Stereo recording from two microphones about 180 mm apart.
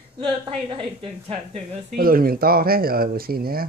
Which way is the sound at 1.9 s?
55° right (ahead or behind).